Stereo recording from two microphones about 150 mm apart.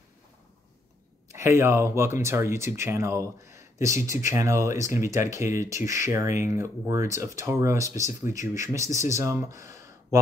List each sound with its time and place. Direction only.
1.3 s speech: 20° right (ahead or behind)